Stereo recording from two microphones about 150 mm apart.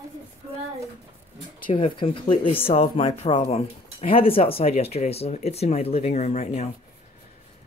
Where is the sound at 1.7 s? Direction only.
35° left (ahead or behind).